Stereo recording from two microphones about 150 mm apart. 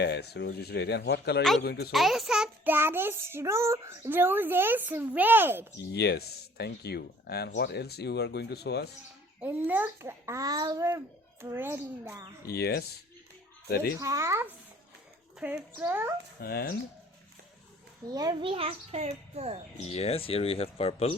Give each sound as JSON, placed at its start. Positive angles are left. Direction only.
{"t": 0.1, "sound": "speech", "side_deg": 90}
{"t": 1.9, "sound": "a child's voice", "side_deg": 0}
{"t": 2.7, "sound": "a child's voice", "side_deg": -15}
{"t": 5.9, "sound": "speech", "side_deg": 90}
{"t": 9.4, "sound": "a child's voice", "side_deg": -10}
{"t": 12.5, "sound": "speech", "side_deg": 90}
{"t": 14.0, "sound": "a child's voice", "side_deg": -20}
{"t": 16.4, "sound": "speech", "side_deg": 85}
{"t": 18.1, "sound": "a child's voice", "side_deg": -25}
{"t": 19.8, "sound": "speech", "side_deg": 45}